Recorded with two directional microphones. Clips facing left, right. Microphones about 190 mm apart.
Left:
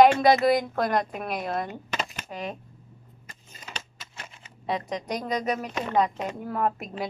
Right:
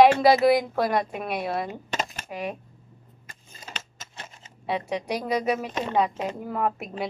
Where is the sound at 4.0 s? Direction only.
35° right (ahead or behind).